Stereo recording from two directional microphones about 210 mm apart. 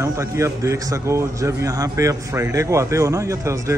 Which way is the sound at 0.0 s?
15° right (ahead or behind).